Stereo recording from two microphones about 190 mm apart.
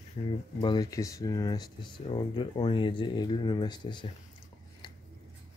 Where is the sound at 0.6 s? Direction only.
20° left (ahead or behind).